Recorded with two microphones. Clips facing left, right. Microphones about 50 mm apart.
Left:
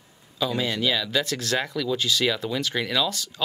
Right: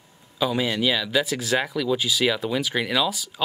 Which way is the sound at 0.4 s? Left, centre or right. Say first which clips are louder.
Right 2 dB; centre.